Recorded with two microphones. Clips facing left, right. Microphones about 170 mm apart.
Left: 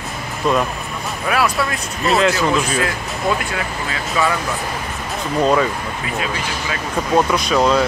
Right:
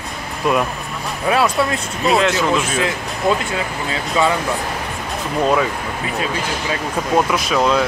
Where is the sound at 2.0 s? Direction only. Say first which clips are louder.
Even; centre (ahead or behind).